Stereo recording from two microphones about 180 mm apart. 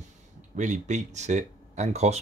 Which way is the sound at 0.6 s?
45° right (ahead or behind).